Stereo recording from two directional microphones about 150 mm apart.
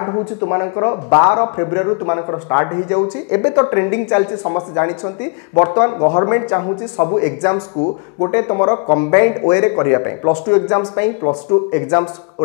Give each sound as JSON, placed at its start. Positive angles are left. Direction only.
{"t": 0.0, "sound": "speech", "side_deg": 25}